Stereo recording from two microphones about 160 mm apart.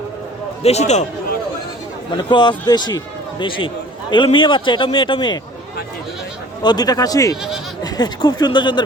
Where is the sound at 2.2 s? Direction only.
30° left (ahead or behind).